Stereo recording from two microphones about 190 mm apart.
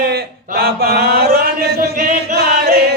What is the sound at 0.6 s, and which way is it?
Mantra, 55° right (ahead or behind).